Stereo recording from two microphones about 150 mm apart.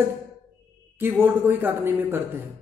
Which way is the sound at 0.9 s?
15° right (ahead or behind).